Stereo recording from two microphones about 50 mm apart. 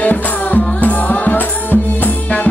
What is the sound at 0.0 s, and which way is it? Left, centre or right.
Music, left.